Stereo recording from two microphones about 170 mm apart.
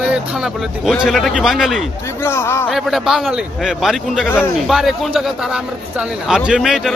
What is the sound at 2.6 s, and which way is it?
A man's voice, centre (ahead or behind).